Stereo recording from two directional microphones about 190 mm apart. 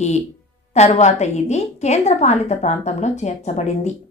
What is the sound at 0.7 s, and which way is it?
A woman's voice, 35° left (ahead or behind).